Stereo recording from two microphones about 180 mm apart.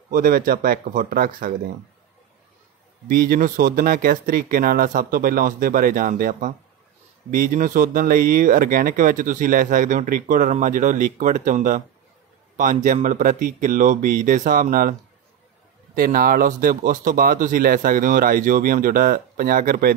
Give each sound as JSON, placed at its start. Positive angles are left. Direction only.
{"t": 0.1, "sound": "speech", "side_deg": -55}
{"t": 3.1, "sound": "speech", "side_deg": -55}